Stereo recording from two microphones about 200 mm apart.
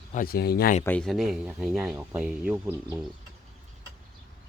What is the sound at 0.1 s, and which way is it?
Speech, 45° left (ahead or behind).